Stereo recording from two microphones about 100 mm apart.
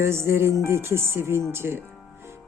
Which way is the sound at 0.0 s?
25° right (ahead or behind).